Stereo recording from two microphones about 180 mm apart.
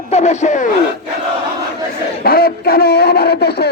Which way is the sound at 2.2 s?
55° left (ahead or behind).